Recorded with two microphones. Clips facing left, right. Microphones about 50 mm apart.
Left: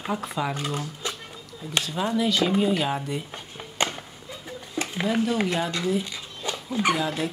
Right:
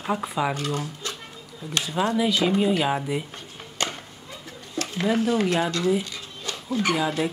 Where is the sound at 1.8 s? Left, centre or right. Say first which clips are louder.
Right 3 dB; centre.